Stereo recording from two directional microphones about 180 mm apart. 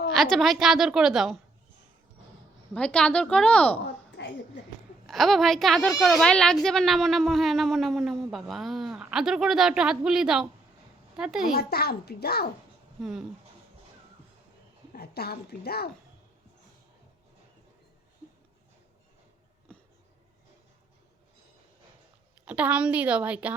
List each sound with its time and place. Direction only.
0.1 s a woman's voice: centre (ahead or behind)
2.7 s speech: 5° left (ahead or behind)
4.2 s a sound: 70° left (ahead or behind)
5.0 s a woman's voice: centre (ahead or behind)
11.5 s a child's voice: 60° left (ahead or behind)
13.0 s a woman's voice: centre (ahead or behind)
14.9 s speech: 60° left (ahead or behind)
22.4 s a woman's voice: 10° right (ahead or behind)